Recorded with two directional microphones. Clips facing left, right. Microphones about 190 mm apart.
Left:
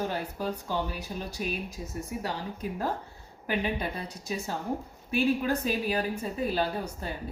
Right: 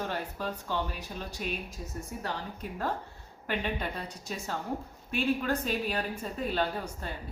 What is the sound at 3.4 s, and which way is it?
Speech, 10° left (ahead or behind).